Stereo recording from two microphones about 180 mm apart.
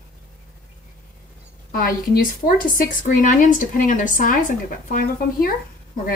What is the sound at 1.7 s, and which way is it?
A woman's voice, 55° left (ahead or behind).